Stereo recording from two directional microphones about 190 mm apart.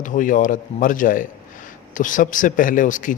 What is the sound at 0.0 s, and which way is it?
Speech, 45° left (ahead or behind).